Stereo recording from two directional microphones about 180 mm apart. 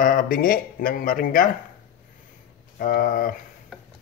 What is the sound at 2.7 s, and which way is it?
Speech, 50° left (ahead or behind).